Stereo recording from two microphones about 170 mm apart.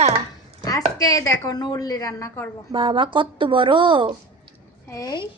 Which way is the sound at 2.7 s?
30° right (ahead or behind).